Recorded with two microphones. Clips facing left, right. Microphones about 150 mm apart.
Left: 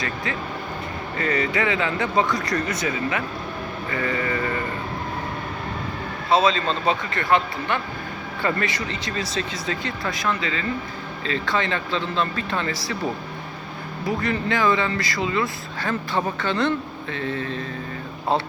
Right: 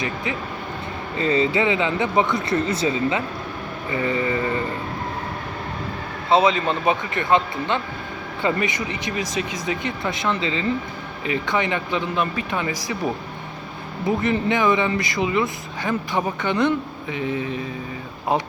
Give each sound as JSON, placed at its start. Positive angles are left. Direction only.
{"t": 1.2, "sound": "speech", "side_deg": -25}
{"t": 6.3, "sound": "speech", "side_deg": -20}
{"t": 14.1, "sound": "speech", "side_deg": -20}